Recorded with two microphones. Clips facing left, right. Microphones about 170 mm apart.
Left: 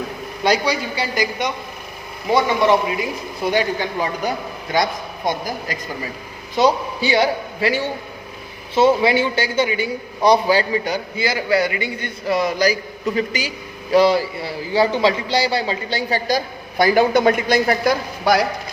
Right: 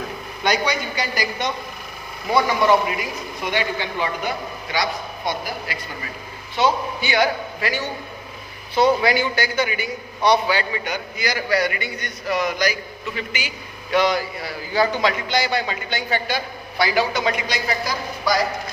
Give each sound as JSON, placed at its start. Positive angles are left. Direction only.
{"t": 0.4, "sound": "a man's voice", "side_deg": 30}
{"t": 1.1, "sound": "a woman's voice", "side_deg": 15}
{"t": 3.5, "sound": "a man's voice", "side_deg": 40}
{"t": 6.6, "sound": "a man's voice", "side_deg": 35}